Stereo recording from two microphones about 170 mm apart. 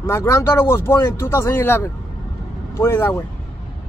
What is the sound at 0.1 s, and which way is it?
Speech, 15° left (ahead or behind).